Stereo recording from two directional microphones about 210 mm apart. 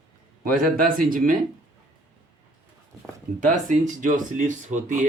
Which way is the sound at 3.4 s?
40° right (ahead or behind).